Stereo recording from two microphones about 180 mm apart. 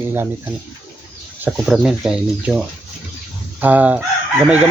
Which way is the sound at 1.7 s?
Centre (ahead or behind).